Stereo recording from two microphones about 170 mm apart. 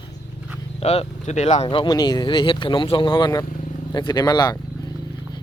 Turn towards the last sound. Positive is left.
turn(degrees=25)  # may be behind; listen again after turning